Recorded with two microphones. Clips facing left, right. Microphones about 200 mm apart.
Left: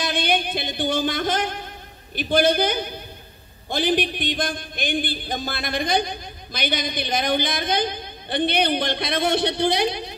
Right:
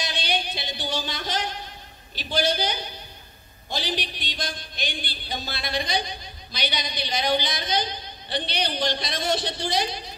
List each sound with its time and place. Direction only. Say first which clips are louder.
0.0 s speech: left 6 dB; 55° left (ahead or behind)